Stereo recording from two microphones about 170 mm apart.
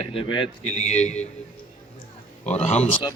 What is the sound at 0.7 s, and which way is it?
Speech, 40° left (ahead or behind).